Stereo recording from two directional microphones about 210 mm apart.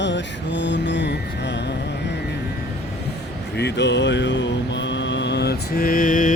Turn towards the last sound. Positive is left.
turn(degrees=40)  # may be behind; listen again after turning